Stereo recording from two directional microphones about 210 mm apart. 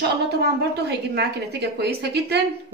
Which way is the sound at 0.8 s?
50° right (ahead or behind).